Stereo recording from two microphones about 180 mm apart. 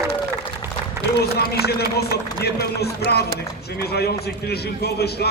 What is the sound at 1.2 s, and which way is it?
A man's voice, 60° left (ahead or behind).